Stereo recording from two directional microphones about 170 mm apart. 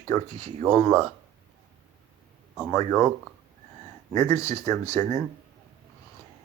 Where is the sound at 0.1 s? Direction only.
15° left (ahead or behind).